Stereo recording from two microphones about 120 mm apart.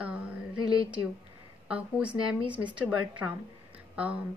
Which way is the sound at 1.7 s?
10° right (ahead or behind).